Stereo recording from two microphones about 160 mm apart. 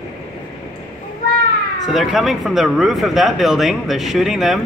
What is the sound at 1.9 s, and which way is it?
Speech, centre (ahead or behind).